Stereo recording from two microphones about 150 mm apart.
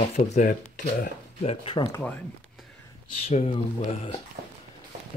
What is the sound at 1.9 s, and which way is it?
Speech, 10° left (ahead or behind).